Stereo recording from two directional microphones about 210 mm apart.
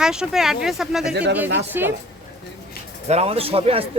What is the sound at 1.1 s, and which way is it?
Speech, 55° right (ahead or behind).